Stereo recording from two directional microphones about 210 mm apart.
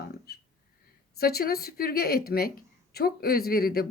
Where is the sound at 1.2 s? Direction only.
45° left (ahead or behind).